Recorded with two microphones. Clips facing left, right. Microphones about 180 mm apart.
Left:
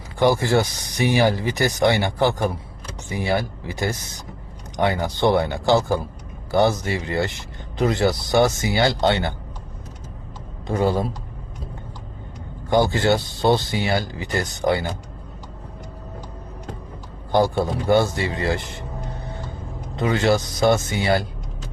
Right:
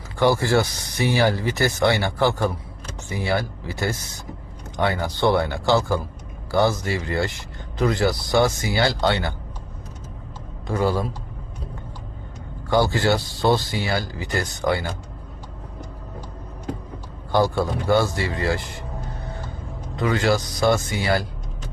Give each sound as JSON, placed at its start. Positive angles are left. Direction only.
{"t": 0.2, "sound": "speech", "side_deg": 15}
{"t": 10.7, "sound": "speech", "side_deg": 20}
{"t": 12.7, "sound": "speech", "side_deg": 20}
{"t": 17.3, "sound": "speech", "side_deg": 20}
{"t": 20.0, "sound": "speech", "side_deg": 25}